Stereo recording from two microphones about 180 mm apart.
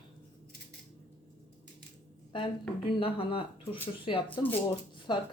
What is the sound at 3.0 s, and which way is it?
A woman's voice, 30° left (ahead or behind).